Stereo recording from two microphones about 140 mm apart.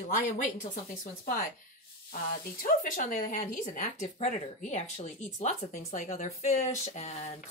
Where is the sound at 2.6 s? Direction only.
75° left (ahead or behind).